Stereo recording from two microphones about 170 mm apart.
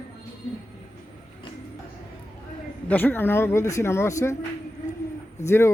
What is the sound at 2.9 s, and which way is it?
Speech, 10° left (ahead or behind).